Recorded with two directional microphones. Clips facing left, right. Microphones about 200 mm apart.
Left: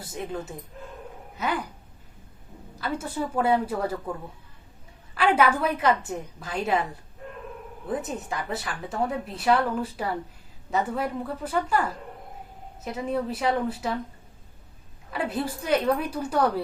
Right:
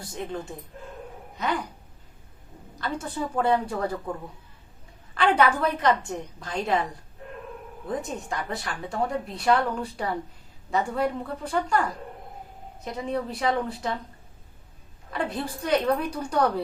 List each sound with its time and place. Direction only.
0.1 s a woman's voice: 5° left (ahead or behind)
2.8 s speech: 5° left (ahead or behind)
5.1 s a woman's voice: 5° left (ahead or behind)
7.9 s a woman's voice: 5° left (ahead or behind)
12.8 s a woman's voice: 5° left (ahead or behind)
15.1 s a woman's voice: 5° left (ahead or behind)